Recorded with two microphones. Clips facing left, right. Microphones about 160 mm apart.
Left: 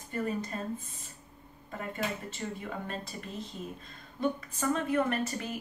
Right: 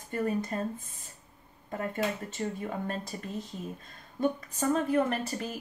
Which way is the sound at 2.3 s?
45° right (ahead or behind).